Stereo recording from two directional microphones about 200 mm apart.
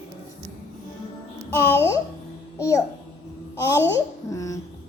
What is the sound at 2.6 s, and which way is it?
Babbling, 15° left (ahead or behind).